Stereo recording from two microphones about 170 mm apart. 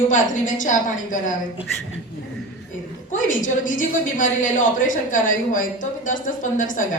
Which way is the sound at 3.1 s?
50° left (ahead or behind).